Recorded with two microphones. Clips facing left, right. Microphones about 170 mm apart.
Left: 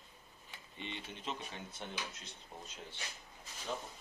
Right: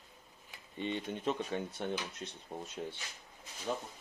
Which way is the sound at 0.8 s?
50° right (ahead or behind).